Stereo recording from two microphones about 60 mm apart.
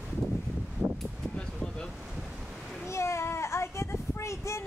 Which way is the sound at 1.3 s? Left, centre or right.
Centre.